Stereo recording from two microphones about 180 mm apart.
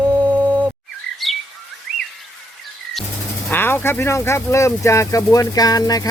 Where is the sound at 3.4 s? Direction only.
10° left (ahead or behind).